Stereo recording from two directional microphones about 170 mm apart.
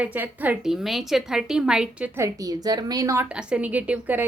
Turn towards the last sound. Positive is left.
turn(degrees=-10)  # may be behind; listen again after turning